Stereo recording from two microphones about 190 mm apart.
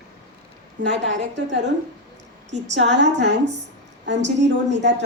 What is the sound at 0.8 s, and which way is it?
Speech, 65° right (ahead or behind).